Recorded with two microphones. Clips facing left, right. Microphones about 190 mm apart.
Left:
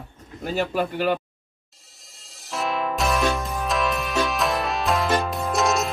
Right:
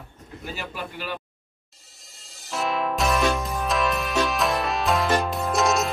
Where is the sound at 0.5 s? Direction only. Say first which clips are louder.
Left 13 dB; 50° left (ahead or behind).